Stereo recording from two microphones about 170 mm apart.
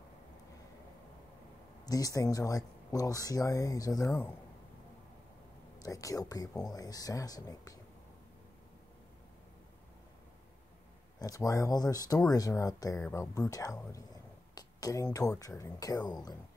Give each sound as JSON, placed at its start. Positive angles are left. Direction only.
{"t": 1.9, "sound": "speech", "side_deg": 20}
{"t": 5.8, "sound": "speech", "side_deg": 20}
{"t": 11.1, "sound": "speech", "side_deg": 20}
{"t": 14.5, "sound": "a sound", "side_deg": 20}
{"t": 15.1, "sound": "speech", "side_deg": 20}